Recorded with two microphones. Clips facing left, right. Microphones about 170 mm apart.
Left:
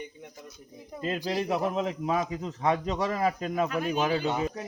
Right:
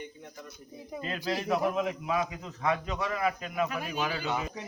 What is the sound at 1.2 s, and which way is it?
Speech, 15° left (ahead or behind).